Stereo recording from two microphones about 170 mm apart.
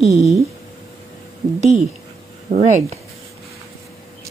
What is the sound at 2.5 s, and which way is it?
Speech, 50° right (ahead or behind).